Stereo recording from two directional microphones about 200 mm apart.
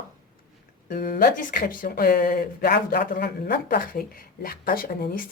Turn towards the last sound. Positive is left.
turn(degrees=45)  # may be behind; listen again after turning